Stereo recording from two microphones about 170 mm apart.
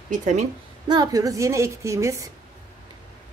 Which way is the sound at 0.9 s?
25° right (ahead or behind).